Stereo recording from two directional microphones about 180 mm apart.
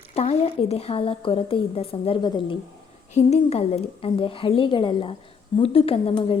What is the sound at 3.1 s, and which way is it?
A woman's voice, 35° left (ahead or behind).